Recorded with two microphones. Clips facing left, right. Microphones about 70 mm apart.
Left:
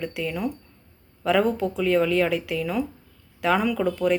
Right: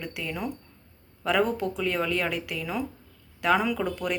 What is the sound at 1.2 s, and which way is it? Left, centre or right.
A woman's voice, centre.